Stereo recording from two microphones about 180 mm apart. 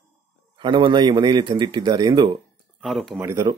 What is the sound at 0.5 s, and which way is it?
Speech, 25° right (ahead or behind).